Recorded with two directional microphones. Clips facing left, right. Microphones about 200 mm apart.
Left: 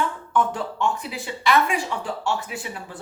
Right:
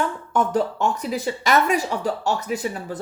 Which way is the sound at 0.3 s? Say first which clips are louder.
Right 3 dB; 40° right (ahead or behind).